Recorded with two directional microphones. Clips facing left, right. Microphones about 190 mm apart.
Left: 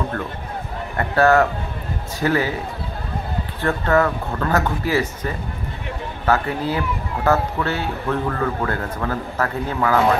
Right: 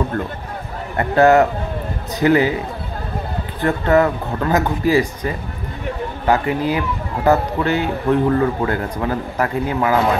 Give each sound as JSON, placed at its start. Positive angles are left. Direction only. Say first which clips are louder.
{"t": 0.9, "sound": "a man's voice", "louder": "right 3 dB", "side_deg": -20}
{"t": 3.6, "sound": "a man's voice", "louder": "right 3 dB", "side_deg": -20}